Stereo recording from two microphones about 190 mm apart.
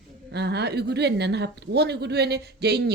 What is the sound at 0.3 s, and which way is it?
A woman's voice, 60° right (ahead or behind).